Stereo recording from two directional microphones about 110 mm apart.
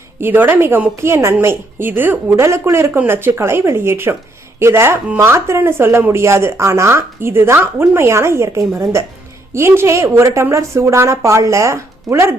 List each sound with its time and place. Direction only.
0.2 s speech: 20° right (ahead or behind)